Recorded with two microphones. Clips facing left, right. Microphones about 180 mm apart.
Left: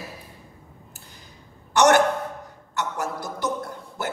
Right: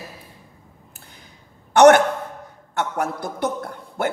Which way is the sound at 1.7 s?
60° right (ahead or behind).